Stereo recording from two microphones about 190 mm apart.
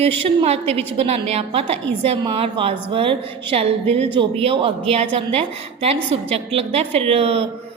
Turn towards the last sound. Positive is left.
turn(degrees=-30)  # may be behind; listen again after turning